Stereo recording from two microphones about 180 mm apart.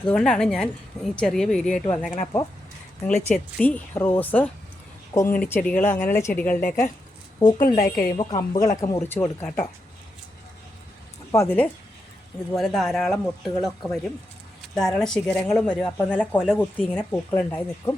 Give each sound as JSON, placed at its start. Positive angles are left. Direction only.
{"t": 0.0, "sound": "a woman's voice", "side_deg": 5}
{"t": 11.3, "sound": "speech", "side_deg": 15}